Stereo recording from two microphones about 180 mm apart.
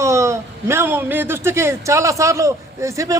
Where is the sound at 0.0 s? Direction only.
15° right (ahead or behind).